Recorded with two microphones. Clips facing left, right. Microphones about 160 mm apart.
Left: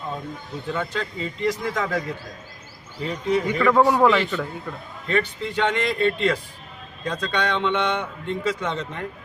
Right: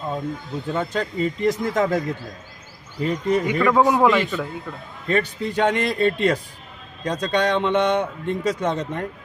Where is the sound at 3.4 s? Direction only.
10° right (ahead or behind).